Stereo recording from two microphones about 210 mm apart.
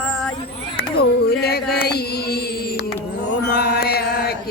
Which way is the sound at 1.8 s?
50° left (ahead or behind).